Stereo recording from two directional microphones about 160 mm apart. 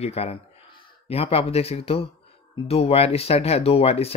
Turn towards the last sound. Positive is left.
turn(degrees=40)  # may be behind; listen again after turning